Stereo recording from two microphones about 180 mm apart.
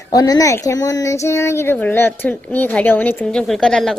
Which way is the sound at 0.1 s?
20° left (ahead or behind).